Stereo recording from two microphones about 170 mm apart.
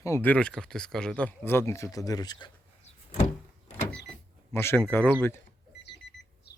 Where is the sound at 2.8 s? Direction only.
50° left (ahead or behind).